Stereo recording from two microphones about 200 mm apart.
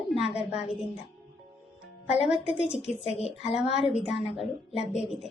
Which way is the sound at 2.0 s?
30° left (ahead or behind).